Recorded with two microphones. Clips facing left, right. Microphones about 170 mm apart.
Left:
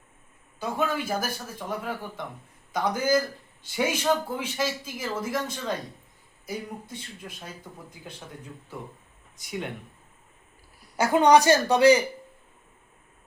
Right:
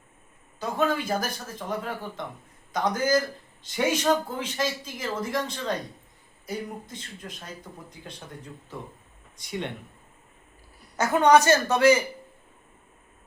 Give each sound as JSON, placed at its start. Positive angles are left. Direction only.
{"t": 0.6, "sound": "a man's voice", "side_deg": 10}
{"t": 9.5, "sound": "speech", "side_deg": 5}
{"t": 10.9, "sound": "a man's voice", "side_deg": 10}